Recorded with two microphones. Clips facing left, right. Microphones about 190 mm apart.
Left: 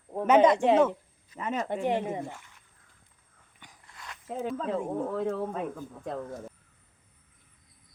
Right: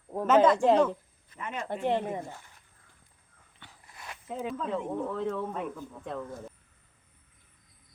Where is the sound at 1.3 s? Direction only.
40° left (ahead or behind).